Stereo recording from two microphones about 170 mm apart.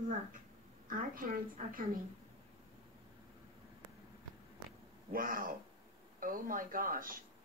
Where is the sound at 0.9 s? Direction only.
55° right (ahead or behind).